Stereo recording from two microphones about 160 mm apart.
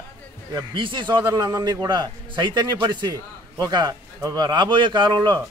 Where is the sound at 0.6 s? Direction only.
30° right (ahead or behind).